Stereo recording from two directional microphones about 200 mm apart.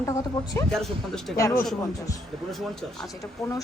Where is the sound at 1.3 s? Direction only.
15° left (ahead or behind).